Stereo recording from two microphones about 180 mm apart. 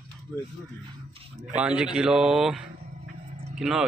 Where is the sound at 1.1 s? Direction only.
30° right (ahead or behind).